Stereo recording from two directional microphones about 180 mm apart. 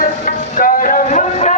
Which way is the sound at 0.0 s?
50° left (ahead or behind).